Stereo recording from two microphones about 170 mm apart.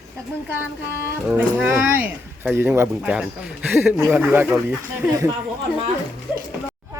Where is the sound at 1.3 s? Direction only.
10° right (ahead or behind).